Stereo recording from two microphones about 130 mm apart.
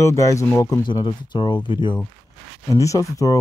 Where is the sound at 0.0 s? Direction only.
25° left (ahead or behind).